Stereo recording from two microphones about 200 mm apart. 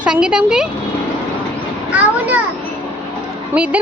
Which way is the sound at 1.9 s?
5° right (ahead or behind).